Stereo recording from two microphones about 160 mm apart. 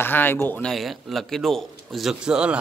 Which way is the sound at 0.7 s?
Centre (ahead or behind).